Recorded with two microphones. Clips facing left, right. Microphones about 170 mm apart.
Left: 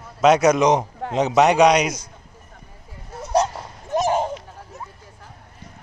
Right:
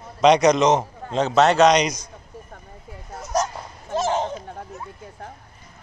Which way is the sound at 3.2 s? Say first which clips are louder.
Left 4 dB; 30° left (ahead or behind).